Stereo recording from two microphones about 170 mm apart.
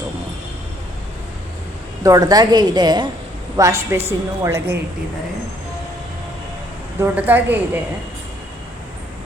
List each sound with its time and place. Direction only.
2.0 s a woman's voice: 20° right (ahead or behind)
7.0 s a woman's voice: 10° right (ahead or behind)